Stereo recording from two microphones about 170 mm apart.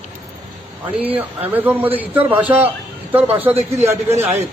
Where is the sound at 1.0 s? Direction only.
10° right (ahead or behind).